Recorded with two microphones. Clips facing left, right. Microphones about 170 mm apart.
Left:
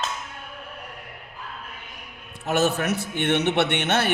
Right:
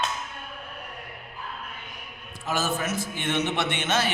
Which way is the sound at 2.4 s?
70° left (ahead or behind).